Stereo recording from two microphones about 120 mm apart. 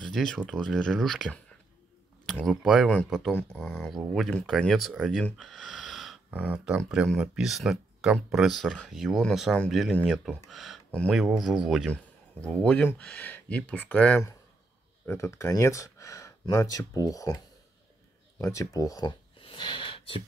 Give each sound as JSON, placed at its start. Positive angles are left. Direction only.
{"t": 0.1, "sound": "speech", "side_deg": 5}
{"t": 2.4, "sound": "speech", "side_deg": 0}
{"t": 6.3, "sound": "speech", "side_deg": -10}
{"t": 11.9, "sound": "a man's voice", "side_deg": 10}
{"t": 15.0, "sound": "speech", "side_deg": 25}
{"t": 18.4, "sound": "speech", "side_deg": 25}
{"t": 19.4, "sound": "gasp", "side_deg": 45}